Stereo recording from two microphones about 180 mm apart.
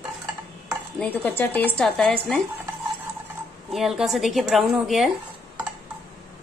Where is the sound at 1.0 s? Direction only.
10° left (ahead or behind).